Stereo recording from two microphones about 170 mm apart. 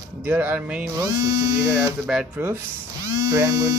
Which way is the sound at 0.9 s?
20° right (ahead or behind).